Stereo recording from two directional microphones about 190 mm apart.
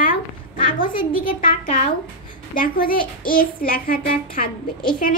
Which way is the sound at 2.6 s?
50° left (ahead or behind).